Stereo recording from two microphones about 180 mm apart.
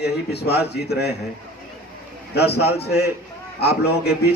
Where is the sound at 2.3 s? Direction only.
65° left (ahead or behind).